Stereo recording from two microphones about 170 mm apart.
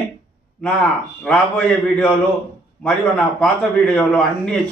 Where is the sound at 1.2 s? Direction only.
5° left (ahead or behind).